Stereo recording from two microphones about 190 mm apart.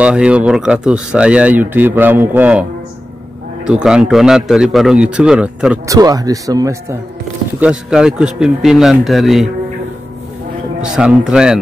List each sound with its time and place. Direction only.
0.0 s speech: 5° right (ahead or behind)
3.6 s a man's voice: 5° right (ahead or behind)
5.9 s speech: 20° right (ahead or behind)
7.6 s a man's voice: 5° right (ahead or behind)
10.8 s a man's voice: 5° right (ahead or behind)